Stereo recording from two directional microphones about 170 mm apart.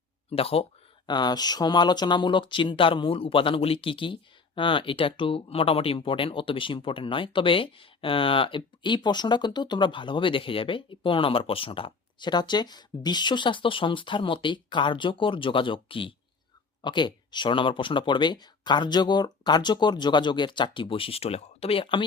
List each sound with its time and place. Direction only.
0.3 s speech: 35° left (ahead or behind)